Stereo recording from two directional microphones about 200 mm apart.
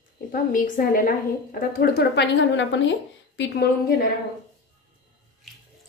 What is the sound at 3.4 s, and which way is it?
Speech, 50° left (ahead or behind).